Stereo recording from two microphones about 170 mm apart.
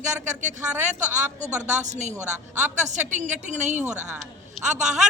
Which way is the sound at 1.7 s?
45° right (ahead or behind).